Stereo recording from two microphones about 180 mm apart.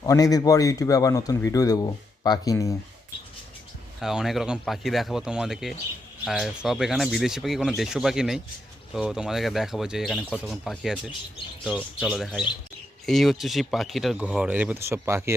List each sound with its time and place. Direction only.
0.0 s a man's voice: 20° left (ahead or behind)
4.0 s speech: 5° right (ahead or behind)